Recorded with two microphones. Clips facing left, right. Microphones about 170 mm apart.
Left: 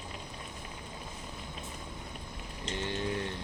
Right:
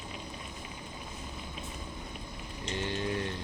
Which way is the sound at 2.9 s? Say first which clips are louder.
Right 1 dB; 15° left (ahead or behind).